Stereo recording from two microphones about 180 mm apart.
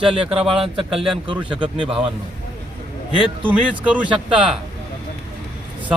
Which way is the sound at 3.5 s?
10° right (ahead or behind).